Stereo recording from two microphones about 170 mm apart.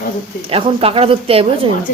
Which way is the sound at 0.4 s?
35° right (ahead or behind).